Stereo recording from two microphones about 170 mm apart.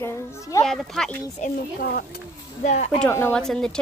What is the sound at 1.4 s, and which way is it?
Speech, 45° left (ahead or behind).